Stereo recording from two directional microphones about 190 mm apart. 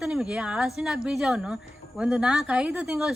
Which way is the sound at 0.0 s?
Centre (ahead or behind).